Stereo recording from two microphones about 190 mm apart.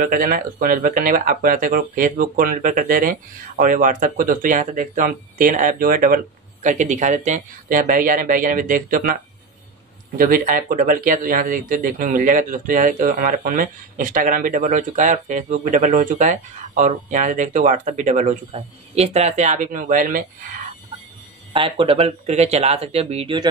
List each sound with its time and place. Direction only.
0.0 s speech: 45° right (ahead or behind)
21.5 s speech: 25° right (ahead or behind)